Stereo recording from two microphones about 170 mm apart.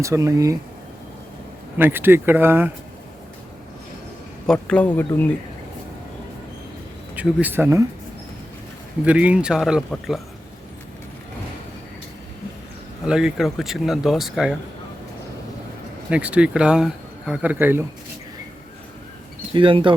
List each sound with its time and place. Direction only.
0.0 s speech: 20° right (ahead or behind)
1.8 s speech: 15° right (ahead or behind)
4.4 s speech: 5° left (ahead or behind)
7.2 s speech: 10° right (ahead or behind)
9.0 s speech: 5° right (ahead or behind)
13.1 s speech: 5° right (ahead or behind)
16.0 s speech: 5° right (ahead or behind)
19.5 s speech: 30° right (ahead or behind)